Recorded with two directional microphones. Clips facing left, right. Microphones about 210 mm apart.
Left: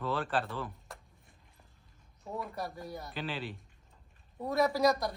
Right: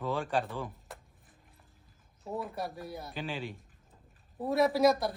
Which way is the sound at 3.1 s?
10° right (ahead or behind).